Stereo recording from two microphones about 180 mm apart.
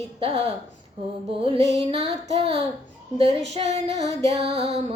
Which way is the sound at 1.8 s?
35° right (ahead or behind).